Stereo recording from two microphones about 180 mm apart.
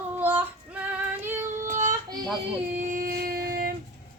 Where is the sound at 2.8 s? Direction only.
50° right (ahead or behind).